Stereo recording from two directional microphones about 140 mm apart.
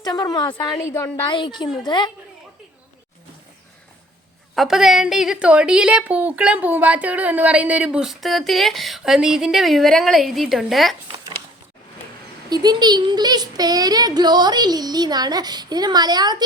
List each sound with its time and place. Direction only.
0.0 s a woman's voice: 30° left (ahead or behind)
1.3 s speech: 35° left (ahead or behind)
4.5 s a woman's voice: centre (ahead or behind)
7.9 s speech: centre (ahead or behind)
12.5 s speech: 30° right (ahead or behind)